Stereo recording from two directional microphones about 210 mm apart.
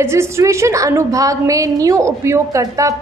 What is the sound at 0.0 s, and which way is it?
A woman's voice, 15° right (ahead or behind).